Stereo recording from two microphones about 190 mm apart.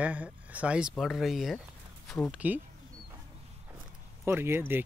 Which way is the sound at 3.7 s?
10° right (ahead or behind).